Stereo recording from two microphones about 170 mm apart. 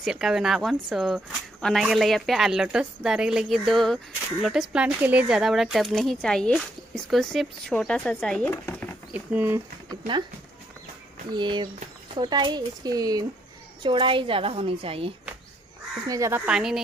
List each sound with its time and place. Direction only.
0.0 s speech: 5° right (ahead or behind)
9.1 s speech: 10° right (ahead or behind)
9.8 s speech: 30° right (ahead or behind)
11.2 s a woman's voice: 25° right (ahead or behind)
16.1 s speech: 15° right (ahead or behind)